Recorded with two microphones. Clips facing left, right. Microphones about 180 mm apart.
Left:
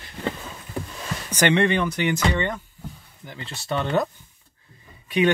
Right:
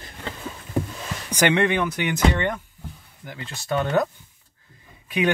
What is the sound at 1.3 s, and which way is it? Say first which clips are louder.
Speech: even; 10° right (ahead or behind).